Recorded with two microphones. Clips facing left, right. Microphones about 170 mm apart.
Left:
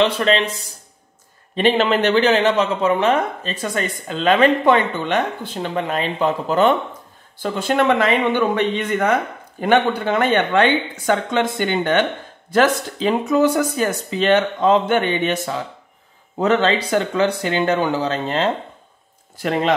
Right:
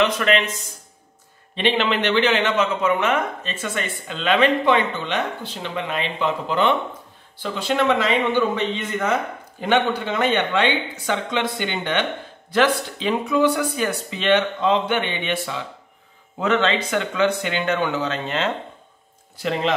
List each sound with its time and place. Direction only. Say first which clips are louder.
0.0 s a man's voice: left 2 dB; 30° left (ahead or behind)
1.5 s a man's voice: left 4 dB; 45° left (ahead or behind)